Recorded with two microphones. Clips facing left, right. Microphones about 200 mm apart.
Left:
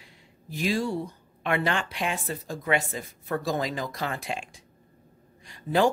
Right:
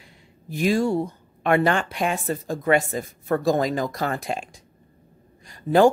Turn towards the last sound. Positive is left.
turn(degrees=-45)  # may be behind; listen again after turning